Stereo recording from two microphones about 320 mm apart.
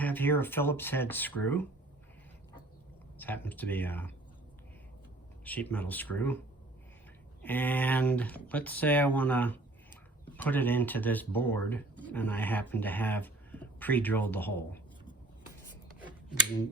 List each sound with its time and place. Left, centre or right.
0.0 s speech: centre
3.2 s speech: centre
5.5 s speech: centre
7.4 s speech: centre
16.0 s a sound: centre